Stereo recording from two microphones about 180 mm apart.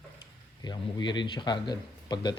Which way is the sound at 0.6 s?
20° left (ahead or behind).